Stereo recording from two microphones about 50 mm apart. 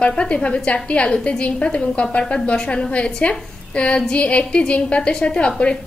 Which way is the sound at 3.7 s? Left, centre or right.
Left.